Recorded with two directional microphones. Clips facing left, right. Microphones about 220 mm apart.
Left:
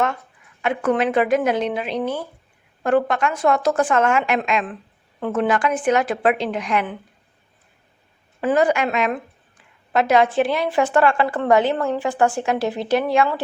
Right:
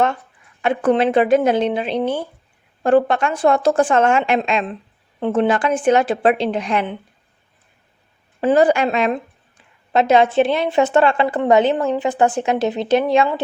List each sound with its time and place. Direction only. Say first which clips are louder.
0.6 s a woman's voice: right 4 dB; 30° right (ahead or behind)
8.4 s a woman's voice: right 4 dB; 30° right (ahead or behind)